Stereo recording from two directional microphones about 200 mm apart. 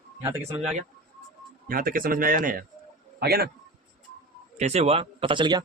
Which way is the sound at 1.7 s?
45° right (ahead or behind).